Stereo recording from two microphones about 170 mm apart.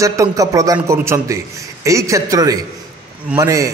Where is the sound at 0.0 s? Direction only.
20° right (ahead or behind).